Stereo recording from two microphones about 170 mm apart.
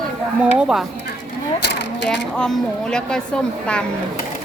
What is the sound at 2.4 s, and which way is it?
Speech, 5° left (ahead or behind).